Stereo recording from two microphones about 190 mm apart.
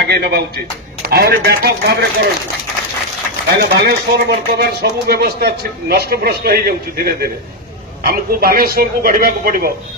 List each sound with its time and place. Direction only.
0.0 s speech: 55° right (ahead or behind)
3.4 s a man's voice: 60° right (ahead or behind)